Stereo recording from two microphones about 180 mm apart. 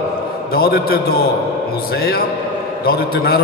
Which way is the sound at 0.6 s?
55° left (ahead or behind).